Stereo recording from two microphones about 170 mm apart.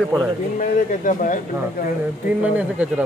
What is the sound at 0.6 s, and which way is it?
Speech, 50° left (ahead or behind).